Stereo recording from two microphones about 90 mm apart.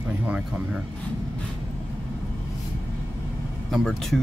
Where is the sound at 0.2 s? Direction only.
15° right (ahead or behind).